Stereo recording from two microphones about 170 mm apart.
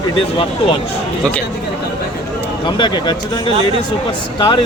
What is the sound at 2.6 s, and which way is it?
Speech, 25° left (ahead or behind).